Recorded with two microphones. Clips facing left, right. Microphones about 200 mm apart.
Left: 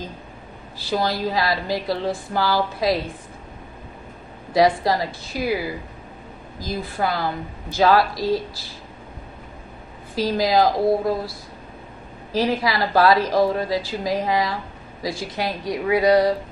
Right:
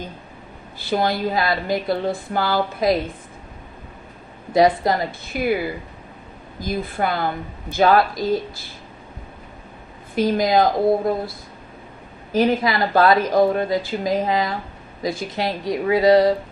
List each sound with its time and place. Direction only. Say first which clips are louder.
0.8 s speech: right 2 dB; 20° right (ahead or behind)
4.5 s speech: right 1 dB; 20° right (ahead or behind)
10.1 s speech: right 2 dB; 20° right (ahead or behind)
12.3 s speech: right 3 dB; 20° right (ahead or behind)